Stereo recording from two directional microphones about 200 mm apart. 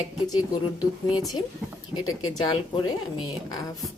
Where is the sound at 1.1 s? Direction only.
Centre (ahead or behind).